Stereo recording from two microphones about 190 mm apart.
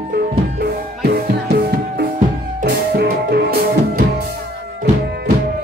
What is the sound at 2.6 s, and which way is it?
Music, 55° right (ahead or behind).